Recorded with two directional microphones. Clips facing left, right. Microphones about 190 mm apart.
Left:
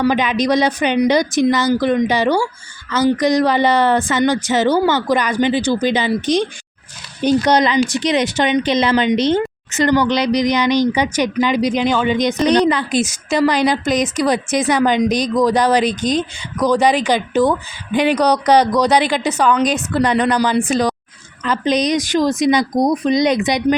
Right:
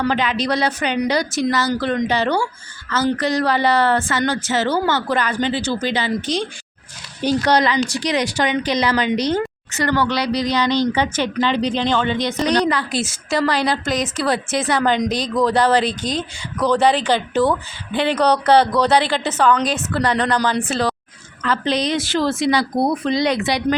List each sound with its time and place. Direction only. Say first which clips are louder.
0.0 s speech: left 4 dB; 15° left (ahead or behind)